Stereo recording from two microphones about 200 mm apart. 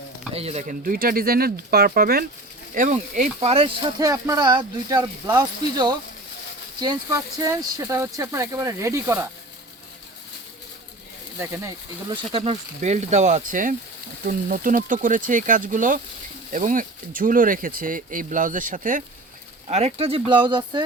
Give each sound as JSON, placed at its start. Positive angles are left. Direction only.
{"t": 0.3, "sound": "speech", "side_deg": -30}
{"t": 2.7, "sound": "speech", "side_deg": -35}
{"t": 11.3, "sound": "speech", "side_deg": -15}
{"t": 12.1, "sound": "speech", "side_deg": -30}